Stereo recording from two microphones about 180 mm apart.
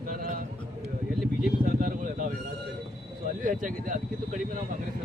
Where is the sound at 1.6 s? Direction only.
50° right (ahead or behind).